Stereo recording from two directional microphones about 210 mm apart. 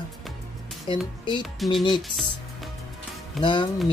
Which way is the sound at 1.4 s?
Centre (ahead or behind).